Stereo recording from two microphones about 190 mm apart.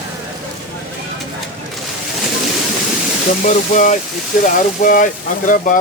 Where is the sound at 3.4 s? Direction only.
40° left (ahead or behind).